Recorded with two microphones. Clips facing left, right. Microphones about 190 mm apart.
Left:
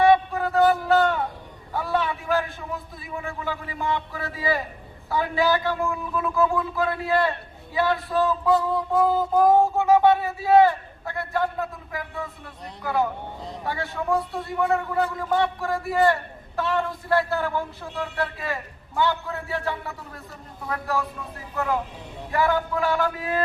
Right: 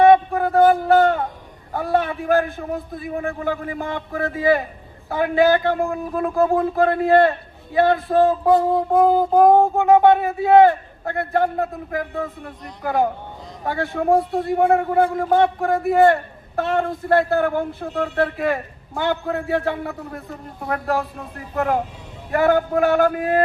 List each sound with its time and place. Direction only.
0.0 s a sound: 50° right (ahead or behind)
1.7 s a man's voice: 55° right (ahead or behind)
13.7 s a man's voice: 55° right (ahead or behind)